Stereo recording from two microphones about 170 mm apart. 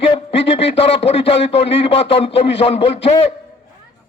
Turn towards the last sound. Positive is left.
turn(degrees=35)  # may be behind; listen again after turning